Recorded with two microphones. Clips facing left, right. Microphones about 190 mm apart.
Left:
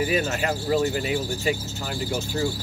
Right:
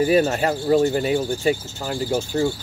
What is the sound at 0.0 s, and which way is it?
Cricket, 40° right (ahead or behind).